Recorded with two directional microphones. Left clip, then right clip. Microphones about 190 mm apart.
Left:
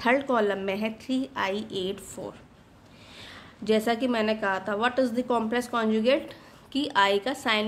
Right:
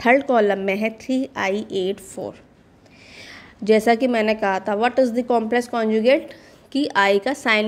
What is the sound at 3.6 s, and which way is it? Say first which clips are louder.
A woman's voice: right 8 dB; 25° right (ahead or behind).